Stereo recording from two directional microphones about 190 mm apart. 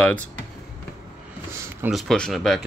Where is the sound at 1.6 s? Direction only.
10° right (ahead or behind).